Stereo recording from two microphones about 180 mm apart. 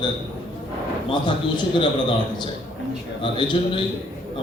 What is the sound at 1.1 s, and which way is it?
Speech, 25° left (ahead or behind).